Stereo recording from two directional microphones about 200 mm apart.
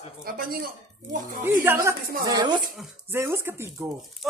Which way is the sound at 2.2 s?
20° right (ahead or behind).